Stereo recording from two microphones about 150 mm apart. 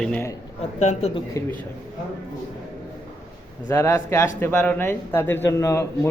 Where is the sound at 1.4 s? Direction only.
20° left (ahead or behind).